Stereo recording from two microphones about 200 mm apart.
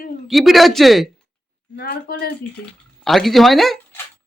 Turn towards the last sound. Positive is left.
turn(degrees=0)  # may be behind; listen again after turning